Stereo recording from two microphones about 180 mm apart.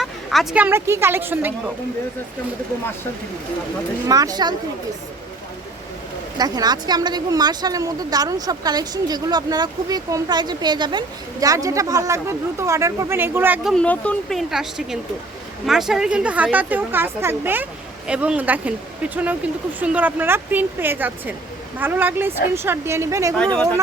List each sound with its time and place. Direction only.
0.0 s speech: centre (ahead or behind)
4.0 s speech: 20° right (ahead or behind)
6.3 s speech: 20° right (ahead or behind)
13.7 s a woman's voice: 5° left (ahead or behind); by 23.3 s 15° right (ahead or behind)